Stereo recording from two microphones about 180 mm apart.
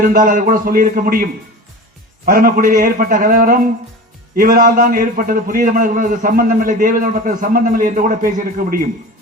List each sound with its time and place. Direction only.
0.0 s a man's voice: 50° right (ahead or behind)